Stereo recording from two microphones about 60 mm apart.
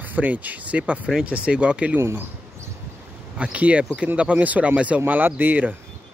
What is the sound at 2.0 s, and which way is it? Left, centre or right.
Speech, right.